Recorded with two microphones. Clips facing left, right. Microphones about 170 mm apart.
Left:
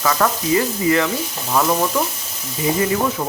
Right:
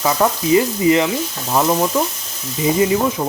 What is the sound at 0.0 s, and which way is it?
Speech, 20° right (ahead or behind).